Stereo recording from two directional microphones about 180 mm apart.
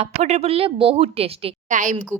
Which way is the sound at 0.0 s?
35° right (ahead or behind).